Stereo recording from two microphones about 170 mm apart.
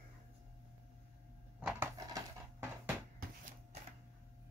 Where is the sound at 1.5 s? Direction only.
10° right (ahead or behind).